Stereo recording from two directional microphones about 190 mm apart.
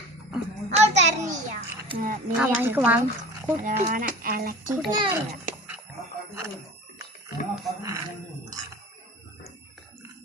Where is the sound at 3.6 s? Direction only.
40° right (ahead or behind).